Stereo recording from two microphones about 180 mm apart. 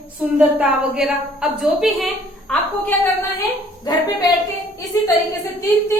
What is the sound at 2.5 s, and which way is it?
Speech, 10° left (ahead or behind).